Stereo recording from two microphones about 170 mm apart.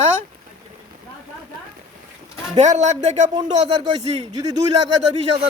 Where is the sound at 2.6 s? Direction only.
45° right (ahead or behind).